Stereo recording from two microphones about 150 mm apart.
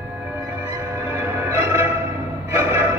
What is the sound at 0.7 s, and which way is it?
Music, 15° right (ahead or behind).